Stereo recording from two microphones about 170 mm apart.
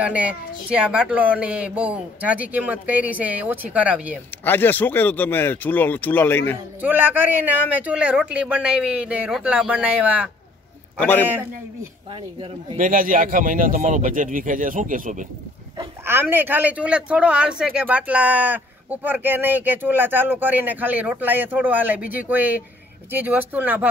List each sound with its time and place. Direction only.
0.0 s speech: 10° right (ahead or behind)
4.5 s speech: 10° left (ahead or behind)
6.8 s speech: 10° right (ahead or behind)
11.0 s speech: 10° left (ahead or behind)
12.7 s speech: 50° right (ahead or behind)
16.1 s speech: 10° right (ahead or behind)